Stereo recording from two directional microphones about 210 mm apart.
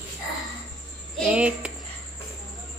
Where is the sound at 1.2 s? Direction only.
5° right (ahead or behind).